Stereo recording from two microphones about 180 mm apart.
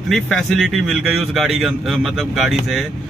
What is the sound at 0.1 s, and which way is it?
Speech, centre (ahead or behind).